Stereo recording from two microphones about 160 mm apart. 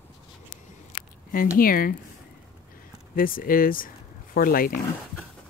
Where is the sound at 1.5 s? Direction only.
65° left (ahead or behind).